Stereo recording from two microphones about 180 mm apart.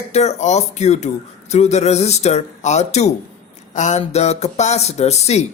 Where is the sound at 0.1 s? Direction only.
35° left (ahead or behind).